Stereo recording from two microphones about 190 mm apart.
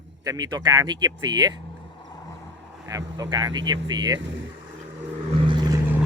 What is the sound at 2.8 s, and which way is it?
Speech, 20° right (ahead or behind).